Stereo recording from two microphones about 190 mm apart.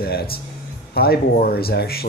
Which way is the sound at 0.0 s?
55° left (ahead or behind).